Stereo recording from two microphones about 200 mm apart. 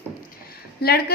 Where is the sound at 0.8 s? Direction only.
50° left (ahead or behind).